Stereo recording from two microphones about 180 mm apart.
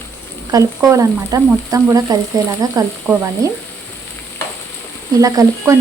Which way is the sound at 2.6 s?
20° right (ahead or behind).